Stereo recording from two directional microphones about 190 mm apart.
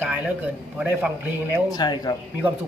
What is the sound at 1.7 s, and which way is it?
Speech, 20° left (ahead or behind).